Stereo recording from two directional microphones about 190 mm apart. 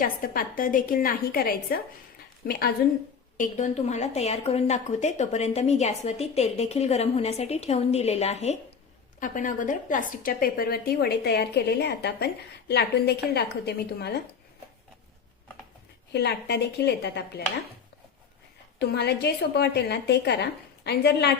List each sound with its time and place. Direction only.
0.0 s a woman's voice: 50° left (ahead or behind)
3.3 s a woman's voice: 40° left (ahead or behind); by 14.2 s 60° left (ahead or behind)
16.1 s a woman's voice: 60° left (ahead or behind)
18.8 s a woman's voice: 60° left (ahead or behind)